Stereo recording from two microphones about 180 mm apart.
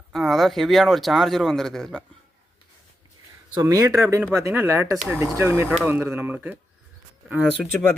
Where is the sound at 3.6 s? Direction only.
20° right (ahead or behind).